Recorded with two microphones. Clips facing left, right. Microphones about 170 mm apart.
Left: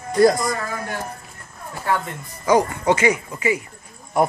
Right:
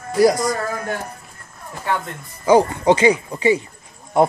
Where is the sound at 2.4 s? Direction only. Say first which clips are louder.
Right 4 dB; 30° right (ahead or behind).